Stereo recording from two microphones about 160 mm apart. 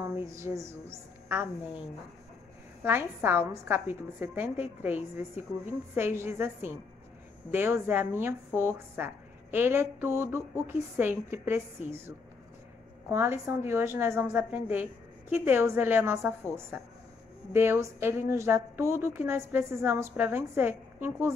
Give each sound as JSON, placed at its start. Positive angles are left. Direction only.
{"t": 0.3, "sound": "a woman's voice", "side_deg": -20}
{"t": 2.8, "sound": "a woman's voice", "side_deg": -15}
{"t": 13.1, "sound": "a woman's voice", "side_deg": -15}